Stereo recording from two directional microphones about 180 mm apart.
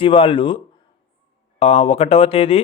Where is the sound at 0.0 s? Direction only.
30° left (ahead or behind).